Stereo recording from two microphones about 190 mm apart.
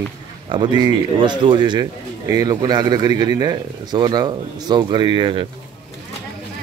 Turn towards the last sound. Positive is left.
turn(degrees=-25)  # may be behind; listen again after turning